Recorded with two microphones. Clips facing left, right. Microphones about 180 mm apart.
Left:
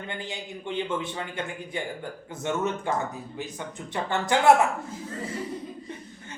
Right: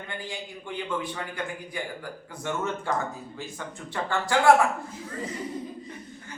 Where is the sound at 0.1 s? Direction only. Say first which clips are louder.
Even; 20° left (ahead or behind).